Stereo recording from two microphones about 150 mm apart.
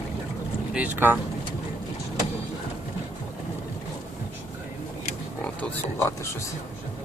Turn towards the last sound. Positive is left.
turn(degrees=15)  # may be behind; listen again after turning